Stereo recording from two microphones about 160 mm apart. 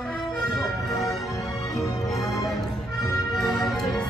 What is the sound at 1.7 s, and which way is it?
Music, centre (ahead or behind).